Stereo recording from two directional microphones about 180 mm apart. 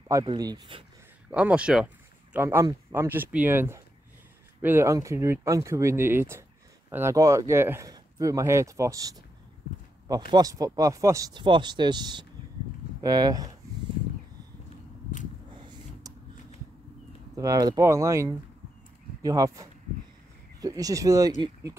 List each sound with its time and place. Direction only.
0.1 s speech: 25° right (ahead or behind)
1.3 s speech: 5° right (ahead or behind)
10.3 s speech: 20° right (ahead or behind)
17.4 s speech: 20° right (ahead or behind)